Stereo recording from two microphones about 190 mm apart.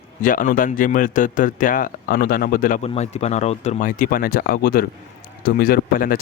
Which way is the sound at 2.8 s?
35° left (ahead or behind).